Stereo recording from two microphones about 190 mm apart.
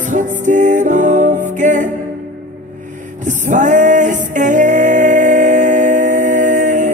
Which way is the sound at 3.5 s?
40° right (ahead or behind).